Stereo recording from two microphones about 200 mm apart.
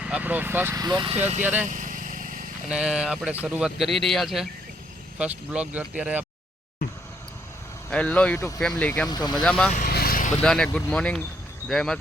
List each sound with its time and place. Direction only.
0.1 s speech: 10° right (ahead or behind); by 1.2 s 25° right (ahead or behind)
1.6 s vehicle: 40° right (ahead or behind)
2.6 s speech: 5° right (ahead or behind)
7.9 s speech: 5° left (ahead or behind)
9.0 s speech: 20° left (ahead or behind)
9.4 s speech: 5° left (ahead or behind)
9.7 s vehicle: 50° left (ahead or behind)
10.4 s speech: 5° left (ahead or behind)